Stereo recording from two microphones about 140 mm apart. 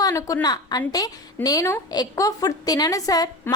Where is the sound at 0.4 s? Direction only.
30° left (ahead or behind).